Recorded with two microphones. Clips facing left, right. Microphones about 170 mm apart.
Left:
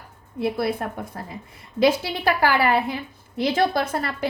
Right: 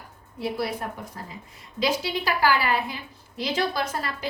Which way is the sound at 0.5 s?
55° left (ahead or behind).